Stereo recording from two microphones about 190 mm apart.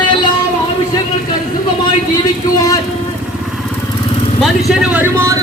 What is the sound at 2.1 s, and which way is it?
Speech, 20° left (ahead or behind).